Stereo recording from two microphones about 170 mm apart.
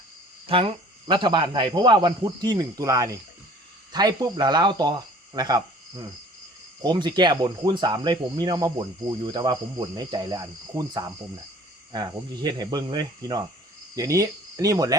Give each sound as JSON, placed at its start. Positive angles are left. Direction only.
{"t": 0.4, "sound": "speech", "side_deg": -35}
{"t": 13.9, "sound": "cricket", "side_deg": -20}